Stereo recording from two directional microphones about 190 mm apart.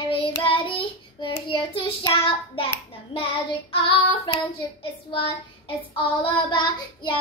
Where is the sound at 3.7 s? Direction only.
30° left (ahead or behind).